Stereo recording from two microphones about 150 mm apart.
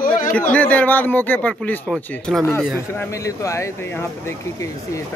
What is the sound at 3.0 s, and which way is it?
Speech, 20° left (ahead or behind).